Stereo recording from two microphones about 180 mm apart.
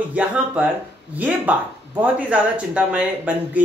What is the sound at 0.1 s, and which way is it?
Speech, 5° right (ahead or behind).